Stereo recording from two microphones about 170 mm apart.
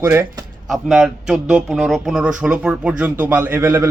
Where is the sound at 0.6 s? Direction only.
5° right (ahead or behind).